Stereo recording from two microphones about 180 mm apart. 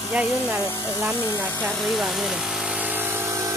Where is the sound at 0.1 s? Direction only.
10° right (ahead or behind).